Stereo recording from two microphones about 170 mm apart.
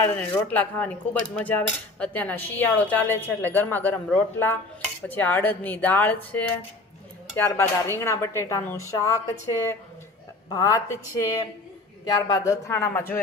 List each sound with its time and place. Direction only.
0.5 s cutlery: 10° left (ahead or behind)
10.5 s a woman's voice: 20° left (ahead or behind)
12.0 s cutlery: 20° left (ahead or behind)